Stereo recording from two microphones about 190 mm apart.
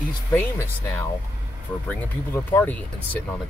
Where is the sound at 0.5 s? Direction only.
15° left (ahead or behind).